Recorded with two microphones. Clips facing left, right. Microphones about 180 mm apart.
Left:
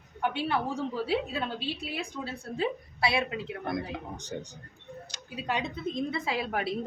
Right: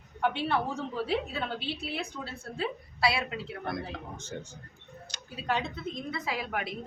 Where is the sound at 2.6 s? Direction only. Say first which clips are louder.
Left 1 dB; 25° left (ahead or behind).